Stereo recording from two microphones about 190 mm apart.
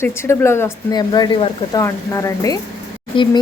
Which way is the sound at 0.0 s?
15° left (ahead or behind).